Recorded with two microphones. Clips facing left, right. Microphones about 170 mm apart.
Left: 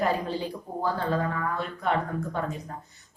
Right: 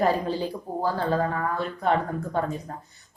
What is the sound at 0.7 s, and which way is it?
Speech, 35° right (ahead or behind).